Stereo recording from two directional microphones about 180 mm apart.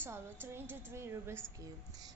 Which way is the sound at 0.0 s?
15° right (ahead or behind).